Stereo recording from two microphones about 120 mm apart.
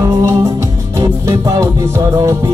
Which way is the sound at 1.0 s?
25° right (ahead or behind).